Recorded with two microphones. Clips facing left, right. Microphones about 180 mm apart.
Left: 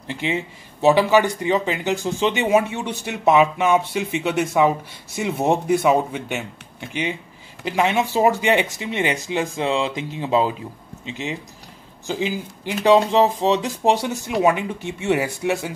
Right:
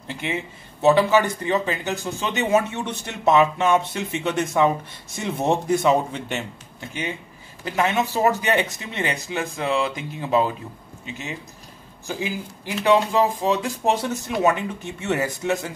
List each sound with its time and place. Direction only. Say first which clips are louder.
0.1 s speech: left 3 dB; 20° left (ahead or behind)